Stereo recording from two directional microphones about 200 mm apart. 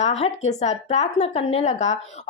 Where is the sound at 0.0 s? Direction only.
35° left (ahead or behind).